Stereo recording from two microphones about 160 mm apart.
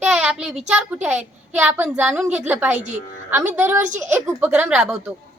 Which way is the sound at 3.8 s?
50° right (ahead or behind).